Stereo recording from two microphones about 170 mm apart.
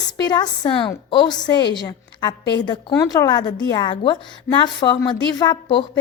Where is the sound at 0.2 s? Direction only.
25° left (ahead or behind).